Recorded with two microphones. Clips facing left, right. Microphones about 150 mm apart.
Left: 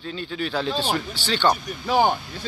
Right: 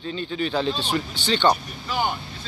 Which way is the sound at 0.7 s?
50° left (ahead or behind).